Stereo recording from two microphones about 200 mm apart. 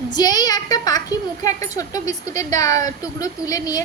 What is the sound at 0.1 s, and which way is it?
A woman's voice, 20° left (ahead or behind).